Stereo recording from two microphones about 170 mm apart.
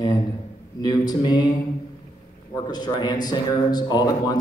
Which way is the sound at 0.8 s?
25° left (ahead or behind).